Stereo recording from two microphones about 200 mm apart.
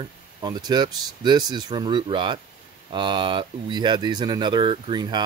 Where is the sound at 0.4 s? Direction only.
20° right (ahead or behind).